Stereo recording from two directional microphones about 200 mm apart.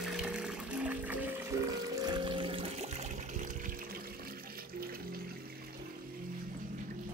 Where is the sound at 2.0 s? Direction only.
20° right (ahead or behind).